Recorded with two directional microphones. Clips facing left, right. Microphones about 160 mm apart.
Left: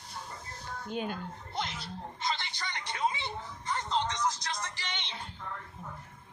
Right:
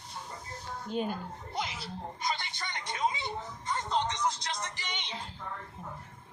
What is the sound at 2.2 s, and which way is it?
Music, 25° right (ahead or behind).